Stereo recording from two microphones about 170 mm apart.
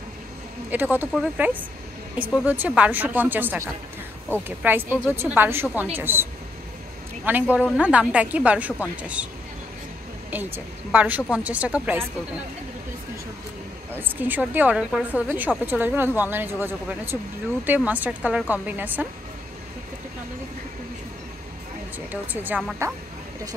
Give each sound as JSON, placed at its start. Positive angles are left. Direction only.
{"t": 0.7, "sound": "a woman's voice", "side_deg": -10}
{"t": 7.2, "sound": "a woman's voice", "side_deg": -10}
{"t": 10.3, "sound": "a woman's voice", "side_deg": -10}
{"t": 13.9, "sound": "a woman's voice", "side_deg": -10}
{"t": 21.9, "sound": "a woman's voice", "side_deg": -10}